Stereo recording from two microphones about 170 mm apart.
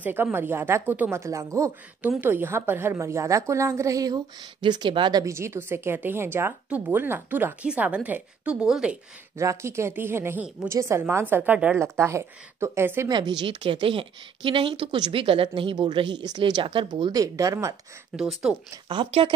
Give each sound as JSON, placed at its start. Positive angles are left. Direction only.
{"t": 0.0, "sound": "speech", "side_deg": -10}
{"t": 9.4, "sound": "speech", "side_deg": -15}
{"t": 13.1, "sound": "a woman's voice", "side_deg": -25}
{"t": 18.1, "sound": "speech", "side_deg": -5}
{"t": 18.9, "sound": "a woman's voice", "side_deg": -30}